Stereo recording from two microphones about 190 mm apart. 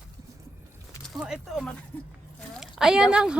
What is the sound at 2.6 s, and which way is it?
Speech, centre (ahead or behind).